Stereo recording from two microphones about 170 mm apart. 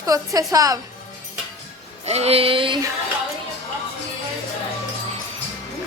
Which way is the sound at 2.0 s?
40° right (ahead or behind).